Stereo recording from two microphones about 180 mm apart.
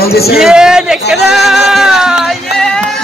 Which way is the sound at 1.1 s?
Centre (ahead or behind).